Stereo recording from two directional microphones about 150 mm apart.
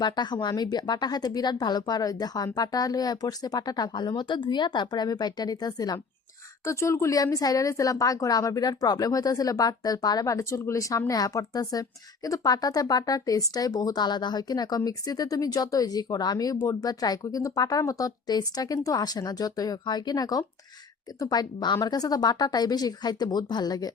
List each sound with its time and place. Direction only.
0.0 s speech: 30° left (ahead or behind)